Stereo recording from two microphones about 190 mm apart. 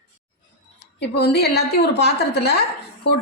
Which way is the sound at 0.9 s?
60° left (ahead or behind).